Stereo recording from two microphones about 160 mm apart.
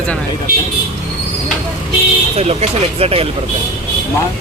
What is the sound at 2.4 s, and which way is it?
Speech, 40° right (ahead or behind).